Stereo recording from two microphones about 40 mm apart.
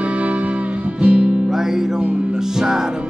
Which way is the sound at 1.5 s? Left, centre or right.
Centre.